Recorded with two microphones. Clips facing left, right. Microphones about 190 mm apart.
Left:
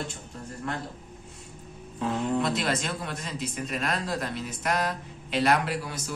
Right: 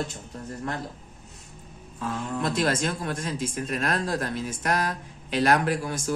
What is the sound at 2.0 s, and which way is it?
Speech, 25° left (ahead or behind).